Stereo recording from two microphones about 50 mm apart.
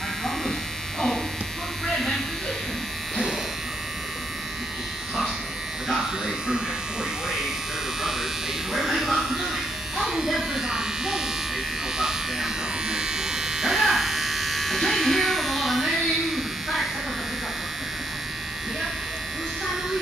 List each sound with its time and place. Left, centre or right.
1.9 s a sound: centre
5.9 s electric shaver: centre
8.7 s electric shaver: centre